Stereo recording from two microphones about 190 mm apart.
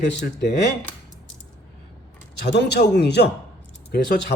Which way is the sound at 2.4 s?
65° left (ahead or behind).